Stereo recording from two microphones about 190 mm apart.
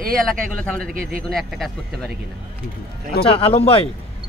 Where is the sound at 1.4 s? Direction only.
Centre (ahead or behind).